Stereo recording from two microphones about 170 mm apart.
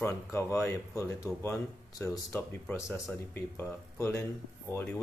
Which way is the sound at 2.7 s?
15° left (ahead or behind).